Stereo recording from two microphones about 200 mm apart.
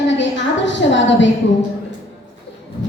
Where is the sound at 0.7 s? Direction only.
65° left (ahead or behind).